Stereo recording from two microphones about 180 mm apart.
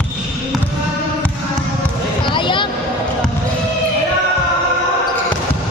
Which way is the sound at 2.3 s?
25° left (ahead or behind).